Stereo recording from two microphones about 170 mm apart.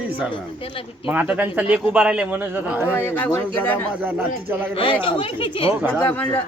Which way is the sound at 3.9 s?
10° right (ahead or behind).